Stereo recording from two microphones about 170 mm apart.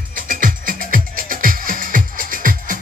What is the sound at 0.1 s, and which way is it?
Music, 55° right (ahead or behind).